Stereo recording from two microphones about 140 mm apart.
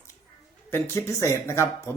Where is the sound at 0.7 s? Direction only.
20° left (ahead or behind).